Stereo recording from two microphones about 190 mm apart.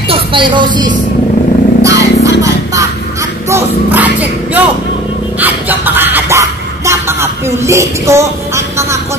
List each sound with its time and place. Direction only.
0.1 s speech: 25° right (ahead or behind)
1.8 s vehicle: 15° right (ahead or behind)
2.4 s music: 15° right (ahead or behind)
3.4 s speech: 10° right (ahead or behind)
5.4 s a sound: 10° right (ahead or behind)